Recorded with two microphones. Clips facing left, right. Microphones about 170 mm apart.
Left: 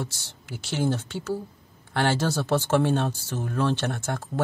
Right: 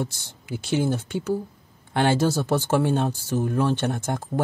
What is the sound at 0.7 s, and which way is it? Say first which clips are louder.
Speech: right 3 dB; 10° right (ahead or behind).